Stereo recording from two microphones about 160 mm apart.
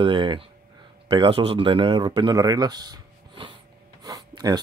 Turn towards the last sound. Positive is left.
turn(degrees=-25)  # may be behind; listen again after turning